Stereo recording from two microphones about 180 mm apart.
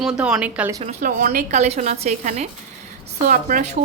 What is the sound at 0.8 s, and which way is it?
A woman's voice, 45° right (ahead or behind).